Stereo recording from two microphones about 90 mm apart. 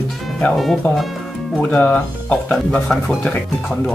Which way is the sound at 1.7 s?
15° left (ahead or behind).